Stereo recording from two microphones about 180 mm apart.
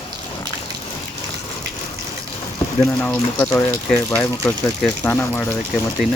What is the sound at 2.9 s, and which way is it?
Speech, 10° left (ahead or behind).